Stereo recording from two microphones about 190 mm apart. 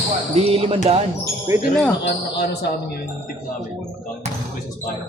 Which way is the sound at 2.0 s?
65° left (ahead or behind).